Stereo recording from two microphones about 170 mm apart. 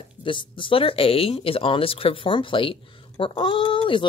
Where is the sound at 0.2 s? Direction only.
30° left (ahead or behind).